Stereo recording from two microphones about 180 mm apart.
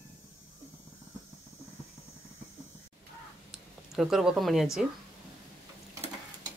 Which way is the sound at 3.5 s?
Centre (ahead or behind).